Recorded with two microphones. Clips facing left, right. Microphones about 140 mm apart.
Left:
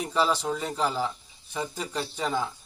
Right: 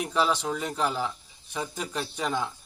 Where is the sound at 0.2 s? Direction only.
5° left (ahead or behind).